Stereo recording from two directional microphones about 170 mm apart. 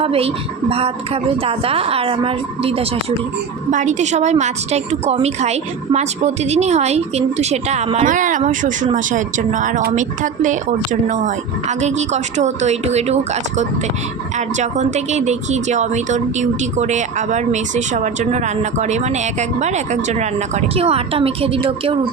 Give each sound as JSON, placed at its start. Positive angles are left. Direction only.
{"t": 0.0, "sound": "a woman's voice", "side_deg": -35}
{"t": 3.7, "sound": "a woman's voice", "side_deg": -45}